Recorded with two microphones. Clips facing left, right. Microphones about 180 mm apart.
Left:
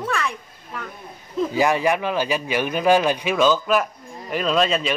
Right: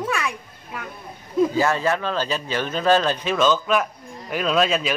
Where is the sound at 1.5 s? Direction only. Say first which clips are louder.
Left 2 dB; 15° left (ahead or behind).